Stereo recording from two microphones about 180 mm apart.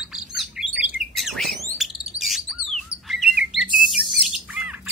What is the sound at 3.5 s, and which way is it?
Bird, centre (ahead or behind).